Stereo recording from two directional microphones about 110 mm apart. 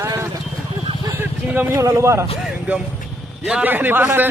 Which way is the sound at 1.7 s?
30° right (ahead or behind).